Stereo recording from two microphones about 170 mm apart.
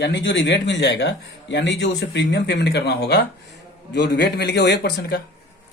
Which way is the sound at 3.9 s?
90° left.